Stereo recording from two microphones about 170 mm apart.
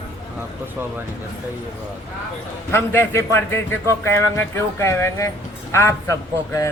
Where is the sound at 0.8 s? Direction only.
10° right (ahead or behind).